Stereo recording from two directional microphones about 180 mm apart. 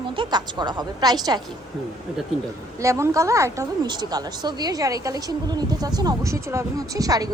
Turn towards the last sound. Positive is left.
turn(degrees=-20)  # may be behind; listen again after turning